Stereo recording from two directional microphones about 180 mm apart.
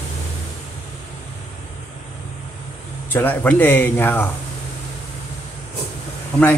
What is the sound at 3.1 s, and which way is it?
Speech, 10° left (ahead or behind).